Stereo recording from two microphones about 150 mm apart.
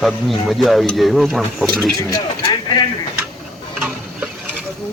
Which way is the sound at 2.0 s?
25° left (ahead or behind).